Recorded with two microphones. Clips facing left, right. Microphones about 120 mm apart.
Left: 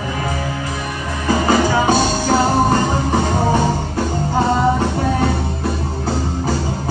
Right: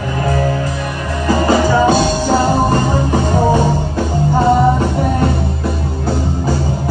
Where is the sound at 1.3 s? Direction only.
30° right (ahead or behind).